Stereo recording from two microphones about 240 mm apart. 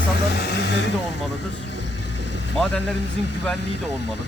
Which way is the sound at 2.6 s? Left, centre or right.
Centre.